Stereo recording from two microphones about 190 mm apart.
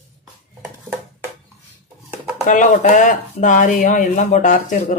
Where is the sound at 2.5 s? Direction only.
40° left (ahead or behind).